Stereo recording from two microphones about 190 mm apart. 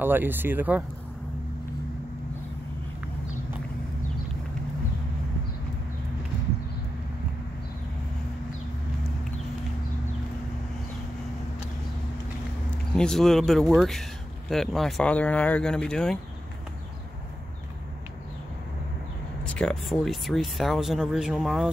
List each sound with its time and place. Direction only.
0.0 s speech: 10° right (ahead or behind)
12.9 s speech: 5° left (ahead or behind)
19.4 s speech: 5° left (ahead or behind)